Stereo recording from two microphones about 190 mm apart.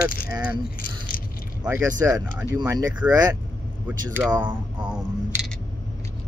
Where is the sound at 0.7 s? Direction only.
45° left (ahead or behind).